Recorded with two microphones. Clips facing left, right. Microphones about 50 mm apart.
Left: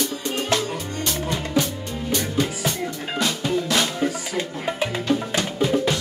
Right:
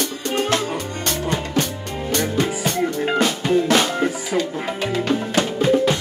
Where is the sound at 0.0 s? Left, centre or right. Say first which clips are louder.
Right 3 dB; right.